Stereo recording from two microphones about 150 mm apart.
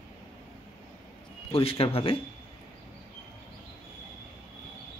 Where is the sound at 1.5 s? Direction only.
40° left (ahead or behind).